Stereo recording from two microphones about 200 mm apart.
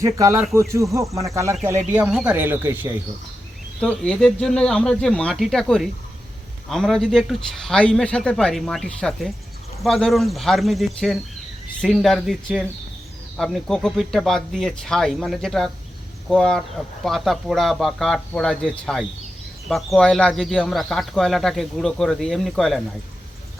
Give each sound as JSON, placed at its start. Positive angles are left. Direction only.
{"t": 0.0, "sound": "speech", "side_deg": -15}
{"t": 3.8, "sound": "speech", "side_deg": 5}